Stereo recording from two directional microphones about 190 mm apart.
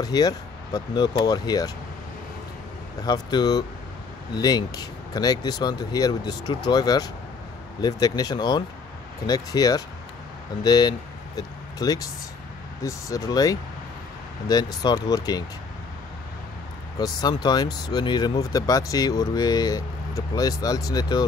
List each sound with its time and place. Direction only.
0.0 s speech: 20° left (ahead or behind)
3.0 s speech: 20° left (ahead or behind)
17.0 s speech: 20° left (ahead or behind)